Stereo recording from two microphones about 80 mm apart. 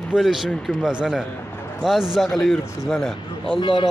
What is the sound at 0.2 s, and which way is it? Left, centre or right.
Speech, centre.